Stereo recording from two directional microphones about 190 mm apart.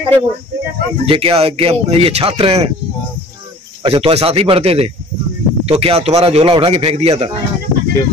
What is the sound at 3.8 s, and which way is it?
Speech, 30° right (ahead or behind).